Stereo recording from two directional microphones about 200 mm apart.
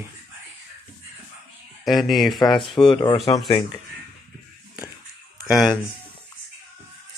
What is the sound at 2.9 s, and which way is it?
Speech, 20° left (ahead or behind).